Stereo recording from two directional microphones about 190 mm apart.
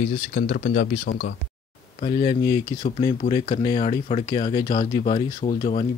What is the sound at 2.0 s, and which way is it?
Speech, 25° left (ahead or behind).